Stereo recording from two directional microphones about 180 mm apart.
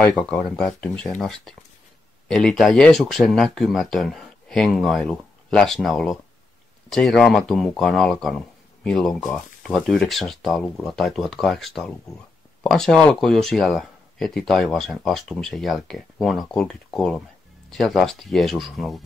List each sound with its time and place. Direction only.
0.0 s speech: 5° left (ahead or behind)